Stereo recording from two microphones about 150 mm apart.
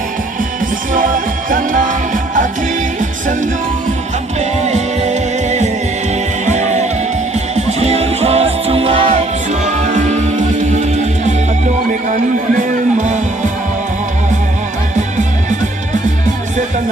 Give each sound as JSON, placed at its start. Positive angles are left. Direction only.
{"t": 0.9, "sound": "music", "side_deg": -65}
{"t": 4.4, "sound": "music", "side_deg": -45}